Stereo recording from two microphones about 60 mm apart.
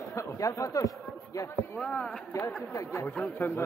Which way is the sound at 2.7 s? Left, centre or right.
Left.